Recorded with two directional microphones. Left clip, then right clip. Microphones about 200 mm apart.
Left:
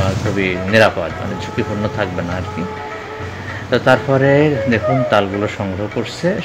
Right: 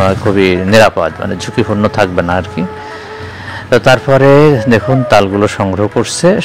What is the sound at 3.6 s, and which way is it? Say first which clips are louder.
A man's voice: right 6 dB; 30° right (ahead or behind).